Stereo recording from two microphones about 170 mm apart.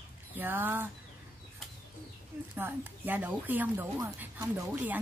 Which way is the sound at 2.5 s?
10° right (ahead or behind).